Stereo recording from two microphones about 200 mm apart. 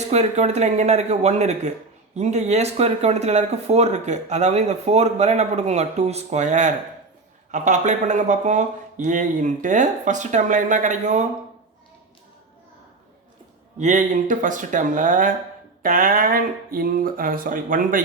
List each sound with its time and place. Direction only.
0.1 s speech: 35° right (ahead or behind)
13.7 s speech: 40° right (ahead or behind)